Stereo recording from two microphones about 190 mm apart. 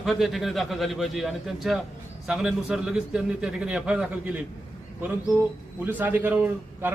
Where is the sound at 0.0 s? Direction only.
Centre (ahead or behind).